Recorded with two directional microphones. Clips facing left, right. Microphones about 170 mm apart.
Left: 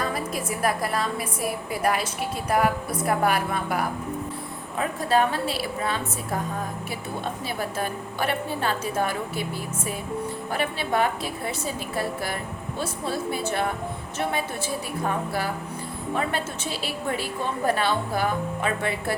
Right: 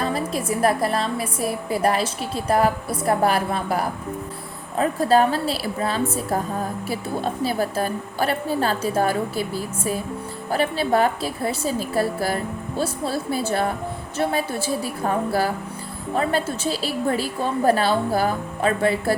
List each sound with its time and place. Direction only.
0.0 s a woman's voice: 30° right (ahead or behind)
7.4 s a woman's voice: 35° right (ahead or behind)